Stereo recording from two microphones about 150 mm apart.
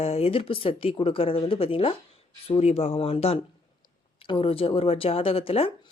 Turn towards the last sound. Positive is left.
turn(degrees=40)  # may be behind; listen again after turning